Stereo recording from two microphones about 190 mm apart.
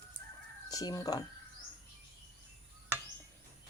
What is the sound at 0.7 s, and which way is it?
Speech, 20° left (ahead or behind).